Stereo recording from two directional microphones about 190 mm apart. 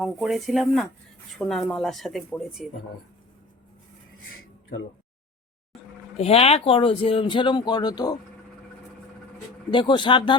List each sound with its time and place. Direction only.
0.0 s speech: centre (ahead or behind)
6.1 s speech: 30° left (ahead or behind)
9.7 s speech: 25° left (ahead or behind)